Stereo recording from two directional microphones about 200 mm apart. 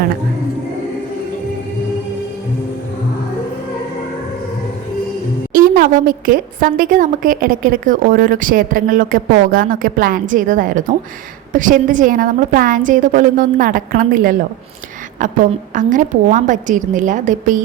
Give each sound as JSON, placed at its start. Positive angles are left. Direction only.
{"t": 5.5, "sound": "a woman's voice", "side_deg": -45}
{"t": 15.7, "sound": "a woman's voice", "side_deg": -40}